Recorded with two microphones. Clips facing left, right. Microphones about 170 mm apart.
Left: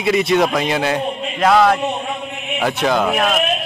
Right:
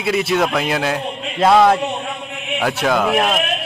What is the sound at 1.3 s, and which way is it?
Speech, 25° right (ahead or behind).